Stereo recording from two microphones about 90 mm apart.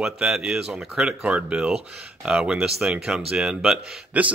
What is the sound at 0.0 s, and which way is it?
Speech, 10° right (ahead or behind).